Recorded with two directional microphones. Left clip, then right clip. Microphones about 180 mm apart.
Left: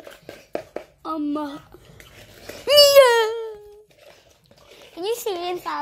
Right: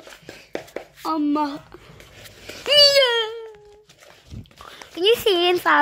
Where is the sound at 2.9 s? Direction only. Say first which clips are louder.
Left 5 dB; 10° left (ahead or behind).